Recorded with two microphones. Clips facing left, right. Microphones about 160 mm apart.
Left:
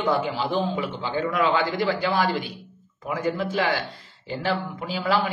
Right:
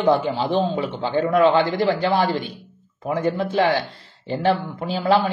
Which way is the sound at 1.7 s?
45° right (ahead or behind).